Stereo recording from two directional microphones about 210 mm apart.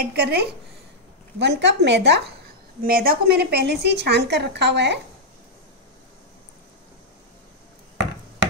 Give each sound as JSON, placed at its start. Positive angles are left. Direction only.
{"t": 0.1, "sound": "a woman's voice", "side_deg": -50}